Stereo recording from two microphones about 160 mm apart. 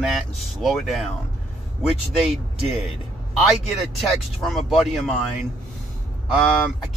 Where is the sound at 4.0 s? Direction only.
Centre (ahead or behind).